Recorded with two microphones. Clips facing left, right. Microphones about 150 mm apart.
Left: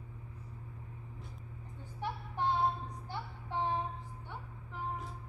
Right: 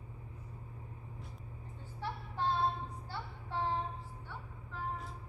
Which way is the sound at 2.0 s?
15° left (ahead or behind).